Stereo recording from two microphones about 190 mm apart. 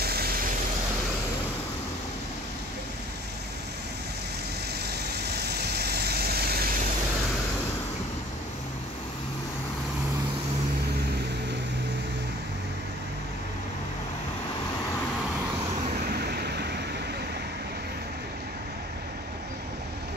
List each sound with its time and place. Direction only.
0.0 s vehicle: 55° right (ahead or behind)
4.8 s vehicle: 60° right (ahead or behind)
16.1 s vehicle: 60° right (ahead or behind)